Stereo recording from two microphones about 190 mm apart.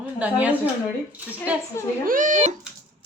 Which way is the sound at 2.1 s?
45° right (ahead or behind).